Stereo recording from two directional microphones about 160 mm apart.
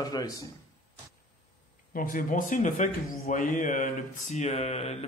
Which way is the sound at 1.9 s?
60° left (ahead or behind).